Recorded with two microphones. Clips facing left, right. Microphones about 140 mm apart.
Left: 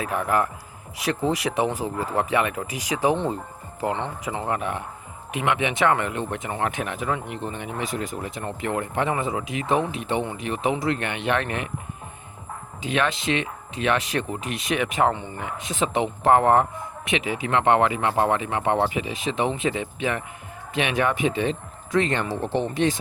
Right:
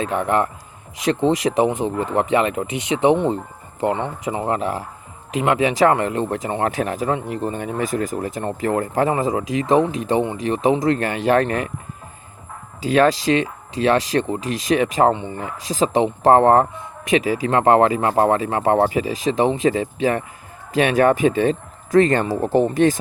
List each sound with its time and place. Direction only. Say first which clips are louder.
0.0 s speech: right 4 dB; 30° right (ahead or behind)
12.8 s speech: right 8 dB; 40° right (ahead or behind)
15.1 s speech: right 6 dB; 20° right (ahead or behind)
15.4 s speech: right 5 dB; 35° right (ahead or behind)